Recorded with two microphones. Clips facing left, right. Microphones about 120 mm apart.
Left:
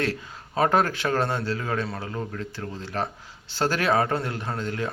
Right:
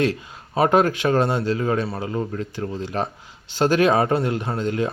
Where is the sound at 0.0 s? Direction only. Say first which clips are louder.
Right 6 dB; 20° right (ahead or behind).